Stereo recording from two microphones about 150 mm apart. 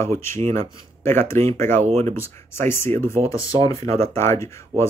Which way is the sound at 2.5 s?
15° left (ahead or behind).